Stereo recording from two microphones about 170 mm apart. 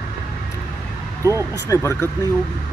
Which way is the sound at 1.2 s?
15° right (ahead or behind).